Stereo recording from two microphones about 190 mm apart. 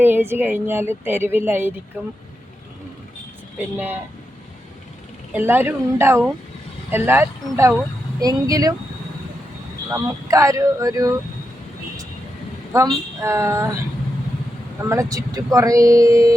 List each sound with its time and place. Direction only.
0.0 s a woman's voice: 10° right (ahead or behind)
5.3 s a woman's voice: 10° right (ahead or behind)
9.9 s a woman's voice: 15° right (ahead or behind)
12.7 s a woman's voice: 15° right (ahead or behind)
14.8 s a woman's voice: 15° right (ahead or behind)